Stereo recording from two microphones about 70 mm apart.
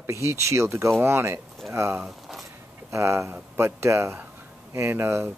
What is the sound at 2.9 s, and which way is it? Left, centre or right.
Speech, right.